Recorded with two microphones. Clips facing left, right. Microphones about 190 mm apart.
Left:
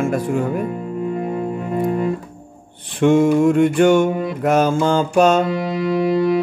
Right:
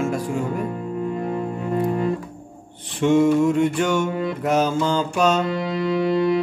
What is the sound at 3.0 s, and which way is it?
Music, 55° left (ahead or behind).